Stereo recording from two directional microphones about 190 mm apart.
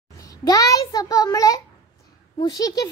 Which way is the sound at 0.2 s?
20° left (ahead or behind).